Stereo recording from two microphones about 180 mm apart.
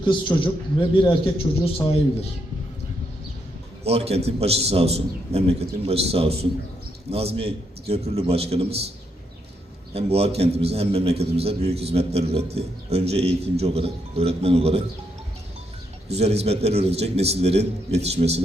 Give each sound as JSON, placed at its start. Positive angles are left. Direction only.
{"t": 0.0, "sound": "a man's voice", "side_deg": 25}
{"t": 3.8, "sound": "a man's voice", "side_deg": -35}
{"t": 9.9, "sound": "a man's voice", "side_deg": -35}
{"t": 16.0, "sound": "a man's voice", "side_deg": -35}